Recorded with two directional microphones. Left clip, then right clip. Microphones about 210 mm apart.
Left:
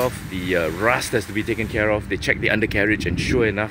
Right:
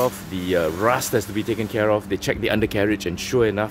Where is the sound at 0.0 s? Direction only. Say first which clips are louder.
Right 1 dB; centre (ahead or behind).